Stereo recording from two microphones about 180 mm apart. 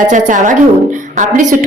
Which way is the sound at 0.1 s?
45° right (ahead or behind).